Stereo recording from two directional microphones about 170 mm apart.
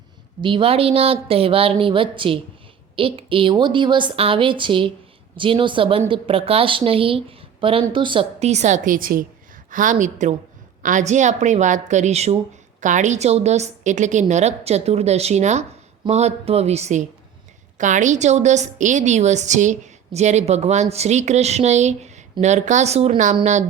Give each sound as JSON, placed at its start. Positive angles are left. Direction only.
{"t": 0.4, "sound": "a woman's voice", "side_deg": -30}